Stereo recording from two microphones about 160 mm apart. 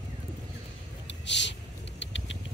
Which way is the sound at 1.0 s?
90° left.